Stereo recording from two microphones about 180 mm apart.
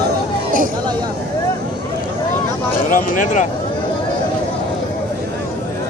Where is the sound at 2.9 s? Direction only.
50° left (ahead or behind).